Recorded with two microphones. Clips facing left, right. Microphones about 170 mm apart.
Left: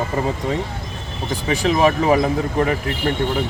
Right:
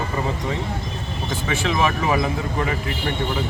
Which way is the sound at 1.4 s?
40° left (ahead or behind).